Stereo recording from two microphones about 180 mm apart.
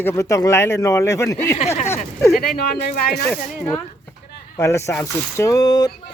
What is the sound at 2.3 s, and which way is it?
Speech, 55° left (ahead or behind).